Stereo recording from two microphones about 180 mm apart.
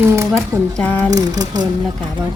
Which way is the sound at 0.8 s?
10° left (ahead or behind).